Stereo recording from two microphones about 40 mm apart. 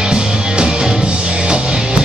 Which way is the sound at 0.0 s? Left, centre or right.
Right.